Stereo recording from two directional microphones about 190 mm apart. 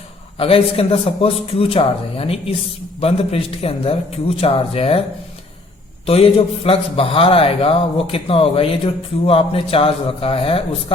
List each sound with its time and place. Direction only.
0.3 s a man's voice: 30° left (ahead or behind)
6.1 s a man's voice: 30° left (ahead or behind)